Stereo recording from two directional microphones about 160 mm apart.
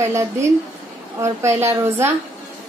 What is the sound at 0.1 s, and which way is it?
A woman's voice, 20° right (ahead or behind).